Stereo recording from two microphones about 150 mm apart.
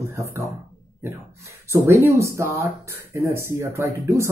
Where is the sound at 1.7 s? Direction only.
15° right (ahead or behind).